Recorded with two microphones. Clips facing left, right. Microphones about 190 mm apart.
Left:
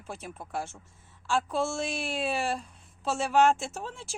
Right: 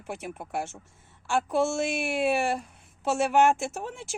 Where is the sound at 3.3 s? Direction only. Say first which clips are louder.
Left 1 dB; 20° right (ahead or behind).